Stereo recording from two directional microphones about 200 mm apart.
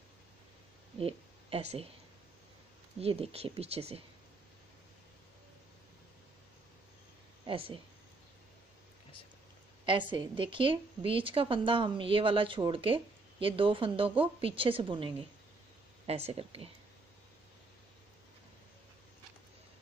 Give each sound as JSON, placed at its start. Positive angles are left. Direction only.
{"t": 0.9, "sound": "a sound", "side_deg": -30}
{"t": 3.0, "sound": "speech", "side_deg": -30}
{"t": 7.4, "sound": "speech", "side_deg": -25}
{"t": 9.8, "sound": "a woman's voice", "side_deg": -25}